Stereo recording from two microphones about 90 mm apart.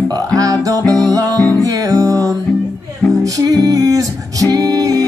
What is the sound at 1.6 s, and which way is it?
Music, 40° right (ahead or behind).